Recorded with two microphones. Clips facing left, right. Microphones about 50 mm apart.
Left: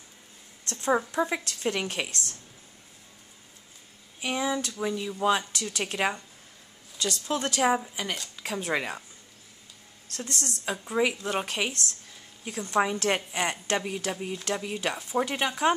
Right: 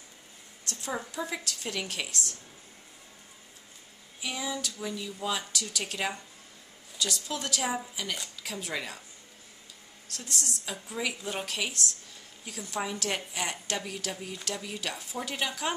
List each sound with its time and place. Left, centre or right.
0.7 s a woman's voice: left
4.2 s a woman's voice: left
10.1 s a woman's voice: left